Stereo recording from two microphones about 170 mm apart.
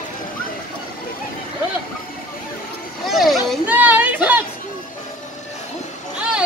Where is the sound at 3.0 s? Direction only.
Centre (ahead or behind).